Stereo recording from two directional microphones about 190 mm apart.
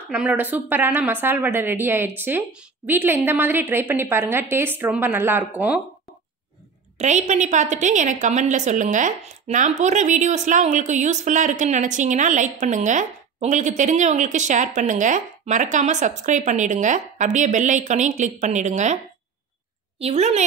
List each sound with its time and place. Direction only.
0.1 s a woman's voice: 5° right (ahead or behind)
7.0 s a woman's voice: 40° right (ahead or behind)
20.0 s a woman's voice: 35° right (ahead or behind)